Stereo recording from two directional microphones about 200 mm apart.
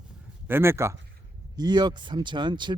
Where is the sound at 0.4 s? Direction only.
10° right (ahead or behind).